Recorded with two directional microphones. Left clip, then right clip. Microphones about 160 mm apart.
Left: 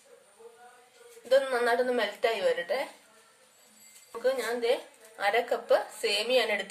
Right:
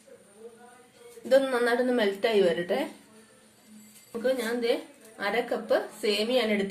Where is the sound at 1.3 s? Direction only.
Centre (ahead or behind).